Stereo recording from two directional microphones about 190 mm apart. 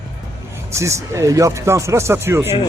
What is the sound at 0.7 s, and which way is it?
Speech, 15° right (ahead or behind).